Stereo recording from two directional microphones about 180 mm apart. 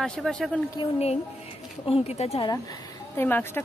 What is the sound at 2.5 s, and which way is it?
Speech, 20° left (ahead or behind).